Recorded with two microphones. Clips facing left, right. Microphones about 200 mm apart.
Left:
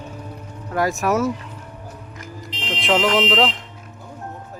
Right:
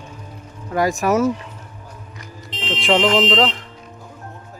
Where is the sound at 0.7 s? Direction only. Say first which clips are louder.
Right 2 dB; centre (ahead or behind).